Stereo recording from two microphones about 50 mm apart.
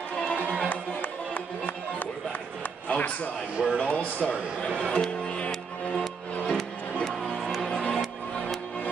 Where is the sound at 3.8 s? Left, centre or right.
Left.